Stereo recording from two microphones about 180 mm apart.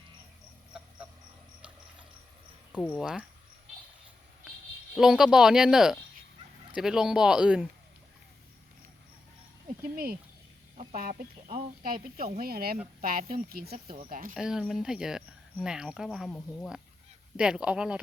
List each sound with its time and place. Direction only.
2.9 s speech: 5° right (ahead or behind)
4.9 s speech: centre (ahead or behind)
9.9 s speech: 55° right (ahead or behind)
10.8 s speech: 40° right (ahead or behind)
14.3 s speech: 5° right (ahead or behind)